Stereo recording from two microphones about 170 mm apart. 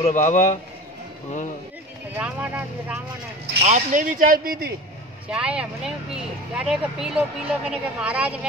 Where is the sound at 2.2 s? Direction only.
10° right (ahead or behind).